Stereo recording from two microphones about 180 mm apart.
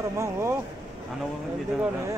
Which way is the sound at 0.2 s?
15° right (ahead or behind).